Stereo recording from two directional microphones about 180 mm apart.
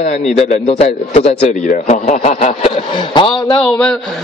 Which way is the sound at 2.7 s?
30° left (ahead or behind).